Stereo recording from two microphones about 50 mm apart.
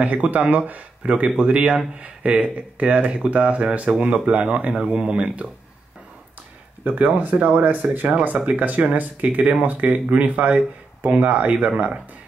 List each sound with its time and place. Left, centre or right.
0.0 s speech: right
6.8 s speech: right